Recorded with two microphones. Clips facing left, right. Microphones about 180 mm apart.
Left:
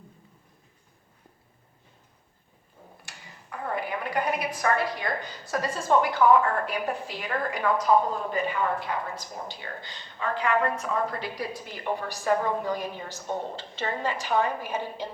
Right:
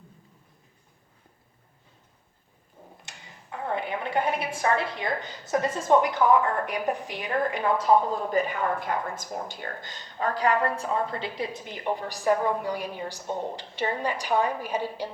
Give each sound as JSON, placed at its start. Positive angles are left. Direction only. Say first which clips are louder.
{"t": 3.0, "sound": "a woman's voice", "louder": "even", "side_deg": -20}
{"t": 8.3, "sound": "speech", "louder": "right 2 dB", "side_deg": -45}